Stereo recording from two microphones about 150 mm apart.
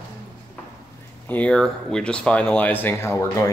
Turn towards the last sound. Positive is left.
turn(degrees=20)  # may be behind; listen again after turning